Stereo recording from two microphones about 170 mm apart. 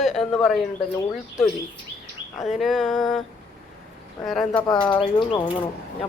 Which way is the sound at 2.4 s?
Centre (ahead or behind).